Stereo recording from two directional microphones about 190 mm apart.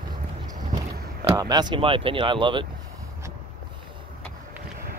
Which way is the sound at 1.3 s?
20° right (ahead or behind).